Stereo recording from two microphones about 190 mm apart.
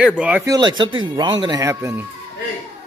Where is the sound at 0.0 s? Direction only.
5° right (ahead or behind).